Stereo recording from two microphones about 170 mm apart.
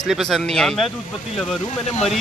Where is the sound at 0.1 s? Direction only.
Centre (ahead or behind).